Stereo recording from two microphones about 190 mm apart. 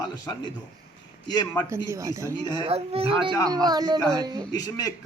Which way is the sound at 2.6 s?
30° right (ahead or behind).